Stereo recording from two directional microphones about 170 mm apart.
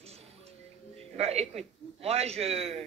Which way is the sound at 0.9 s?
40° right (ahead or behind).